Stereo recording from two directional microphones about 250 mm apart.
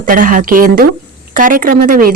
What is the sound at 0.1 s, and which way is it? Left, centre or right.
A woman's voice, right.